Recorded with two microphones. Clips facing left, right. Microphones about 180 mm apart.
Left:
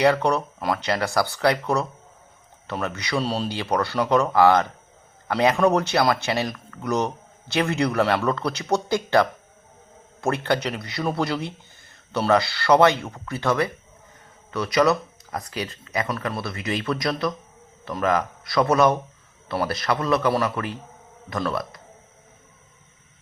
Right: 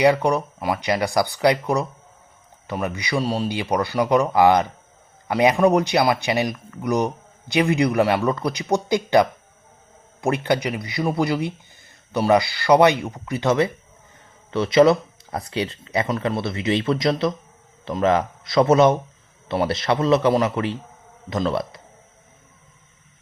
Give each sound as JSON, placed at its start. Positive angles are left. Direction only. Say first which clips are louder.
{"t": 0.0, "sound": "speech", "louder": "right 2 dB", "side_deg": -15}